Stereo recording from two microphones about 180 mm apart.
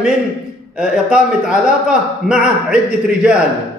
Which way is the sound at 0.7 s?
5° right (ahead or behind).